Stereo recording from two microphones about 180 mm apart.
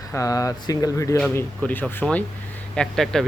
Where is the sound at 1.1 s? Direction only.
5° left (ahead or behind).